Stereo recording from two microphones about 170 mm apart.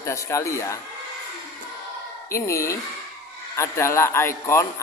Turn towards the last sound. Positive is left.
turn(degrees=15)  # may be behind; listen again after turning